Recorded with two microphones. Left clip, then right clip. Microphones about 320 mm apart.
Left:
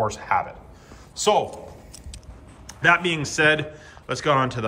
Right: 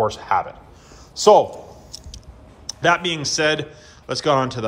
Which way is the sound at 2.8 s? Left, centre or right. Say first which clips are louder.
Right 1 dB; centre.